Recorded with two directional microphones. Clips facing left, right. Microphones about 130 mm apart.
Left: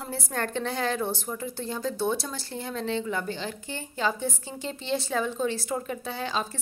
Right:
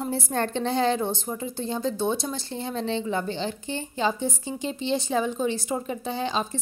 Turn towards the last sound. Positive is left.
turn(degrees=-20)  # may be behind; listen again after turning